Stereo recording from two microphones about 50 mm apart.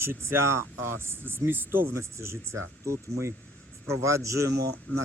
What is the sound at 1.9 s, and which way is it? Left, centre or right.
A man's voice, right.